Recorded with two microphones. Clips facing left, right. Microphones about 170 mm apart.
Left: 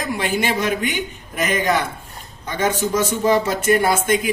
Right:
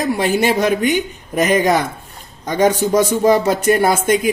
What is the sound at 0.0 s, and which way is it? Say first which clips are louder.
Speech: right 6 dB; 45° right (ahead or behind).